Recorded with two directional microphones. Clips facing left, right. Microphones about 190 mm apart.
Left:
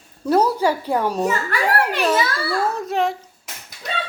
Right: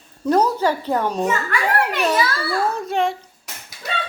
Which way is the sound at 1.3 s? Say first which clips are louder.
Even; 35° left (ahead or behind).